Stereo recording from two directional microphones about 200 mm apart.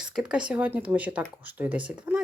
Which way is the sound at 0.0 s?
5° right (ahead or behind).